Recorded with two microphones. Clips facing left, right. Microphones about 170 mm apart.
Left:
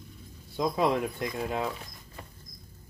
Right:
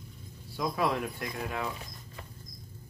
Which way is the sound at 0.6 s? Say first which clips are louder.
Left 4 dB; 20° left (ahead or behind).